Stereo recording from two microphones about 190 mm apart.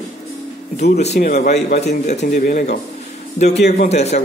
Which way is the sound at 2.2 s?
45° left (ahead or behind).